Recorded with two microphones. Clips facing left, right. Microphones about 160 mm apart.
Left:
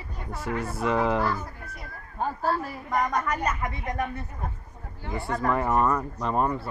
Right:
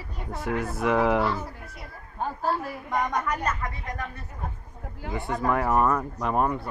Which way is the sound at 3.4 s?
15° left (ahead or behind).